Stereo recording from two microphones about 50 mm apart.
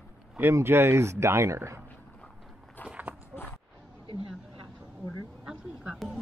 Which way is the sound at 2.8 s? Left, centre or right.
Left.